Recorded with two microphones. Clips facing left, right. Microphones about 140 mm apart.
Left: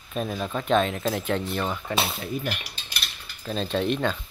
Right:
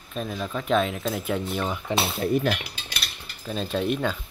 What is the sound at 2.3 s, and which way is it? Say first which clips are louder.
Cutlery: right 8 dB; 90° right.